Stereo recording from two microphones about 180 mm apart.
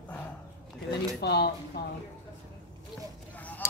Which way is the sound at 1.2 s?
65° left (ahead or behind).